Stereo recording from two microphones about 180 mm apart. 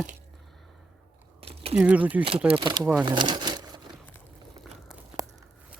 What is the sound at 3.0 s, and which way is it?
Crumpling, 25° right (ahead or behind).